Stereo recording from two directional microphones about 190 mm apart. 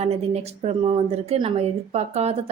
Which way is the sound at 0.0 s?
35° right (ahead or behind).